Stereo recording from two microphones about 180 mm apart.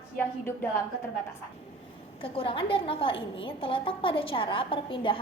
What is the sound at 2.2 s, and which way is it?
A woman's voice, 30° left (ahead or behind).